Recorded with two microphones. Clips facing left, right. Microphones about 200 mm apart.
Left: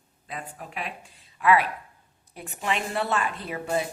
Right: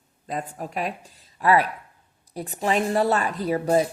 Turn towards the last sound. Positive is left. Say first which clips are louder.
# right 8 dB
turn(degrees=-40)  # may be behind; listen again after turning